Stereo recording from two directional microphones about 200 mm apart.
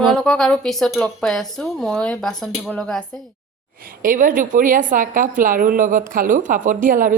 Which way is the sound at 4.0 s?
45° right (ahead or behind).